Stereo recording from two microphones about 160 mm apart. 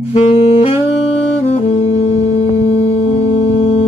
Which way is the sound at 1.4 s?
40° left (ahead or behind).